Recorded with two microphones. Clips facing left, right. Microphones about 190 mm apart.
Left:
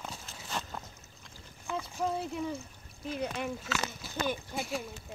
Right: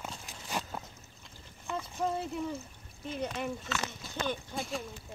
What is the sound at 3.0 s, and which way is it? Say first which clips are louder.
Speech: left 1 dB; centre (ahead or behind).